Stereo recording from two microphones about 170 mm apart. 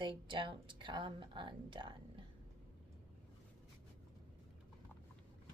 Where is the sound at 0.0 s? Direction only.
30° right (ahead or behind).